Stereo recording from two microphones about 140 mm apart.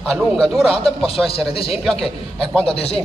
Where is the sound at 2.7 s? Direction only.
45° left (ahead or behind).